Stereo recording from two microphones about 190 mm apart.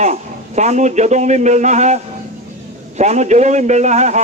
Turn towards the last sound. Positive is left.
turn(degrees=-35)  # may be behind; listen again after turning